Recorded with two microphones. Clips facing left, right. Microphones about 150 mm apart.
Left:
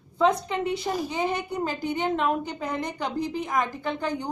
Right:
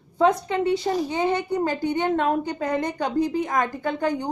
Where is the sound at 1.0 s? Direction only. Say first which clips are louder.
Right 4 dB; 60° right (ahead or behind).